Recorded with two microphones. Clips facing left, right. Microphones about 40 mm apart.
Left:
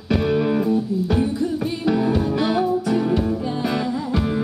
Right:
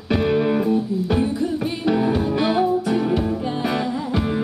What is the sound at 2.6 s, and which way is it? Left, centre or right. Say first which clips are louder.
Music: right 1 dB; centre.